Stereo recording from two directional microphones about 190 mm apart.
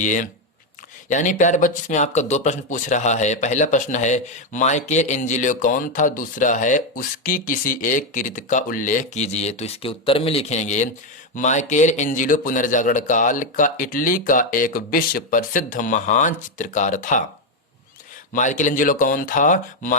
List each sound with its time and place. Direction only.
0.0 s speech: 40° left (ahead or behind)
18.3 s speech: 40° left (ahead or behind)